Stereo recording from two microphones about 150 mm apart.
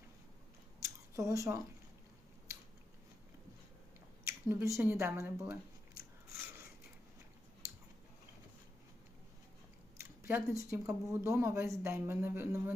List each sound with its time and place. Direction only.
0.8 s a sound: 20° right (ahead or behind)
4.3 s speech: 20° right (ahead or behind)
10.2 s speech: 15° right (ahead or behind)